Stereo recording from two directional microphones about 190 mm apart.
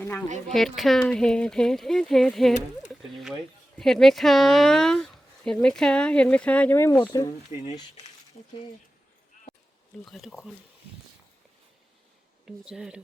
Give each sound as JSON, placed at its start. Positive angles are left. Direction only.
{"t": 0.0, "sound": "speech", "side_deg": 10}
{"t": 3.8, "sound": "speech", "side_deg": 0}
{"t": 10.1, "sound": "speech", "side_deg": 0}
{"t": 12.5, "sound": "speech", "side_deg": -5}